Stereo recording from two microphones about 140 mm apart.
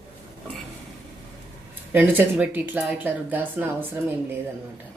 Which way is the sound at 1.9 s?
15° right (ahead or behind).